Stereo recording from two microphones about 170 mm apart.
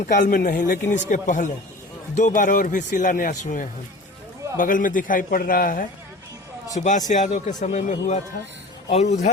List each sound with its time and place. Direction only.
0.3 s speech: 55° left (ahead or behind)